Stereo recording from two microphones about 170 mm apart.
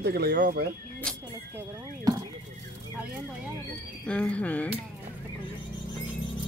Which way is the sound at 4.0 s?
5° left (ahead or behind).